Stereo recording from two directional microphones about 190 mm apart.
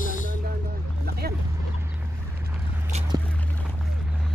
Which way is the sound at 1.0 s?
55° right (ahead or behind).